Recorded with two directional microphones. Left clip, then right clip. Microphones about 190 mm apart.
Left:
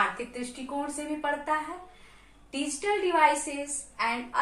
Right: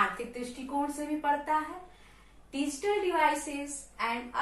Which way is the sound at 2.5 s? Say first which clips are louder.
Left 2 dB; 10° right (ahead or behind).